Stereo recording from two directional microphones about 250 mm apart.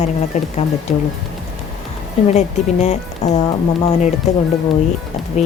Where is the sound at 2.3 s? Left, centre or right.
Left.